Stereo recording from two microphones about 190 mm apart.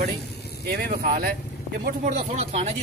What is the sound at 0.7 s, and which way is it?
Speech, 55° right (ahead or behind).